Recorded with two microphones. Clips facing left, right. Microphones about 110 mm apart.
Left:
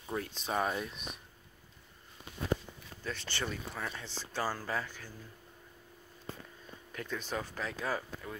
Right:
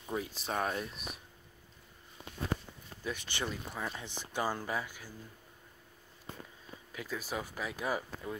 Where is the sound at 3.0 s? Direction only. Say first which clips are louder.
Right 1 dB; 15° right (ahead or behind).